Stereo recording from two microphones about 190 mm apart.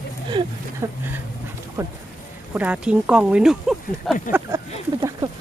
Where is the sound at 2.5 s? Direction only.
10° right (ahead or behind).